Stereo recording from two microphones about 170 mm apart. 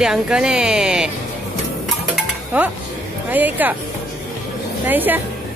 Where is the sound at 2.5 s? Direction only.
10° right (ahead or behind).